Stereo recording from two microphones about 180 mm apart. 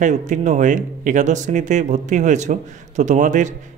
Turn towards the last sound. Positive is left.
turn(degrees=-45)  # may be behind; listen again after turning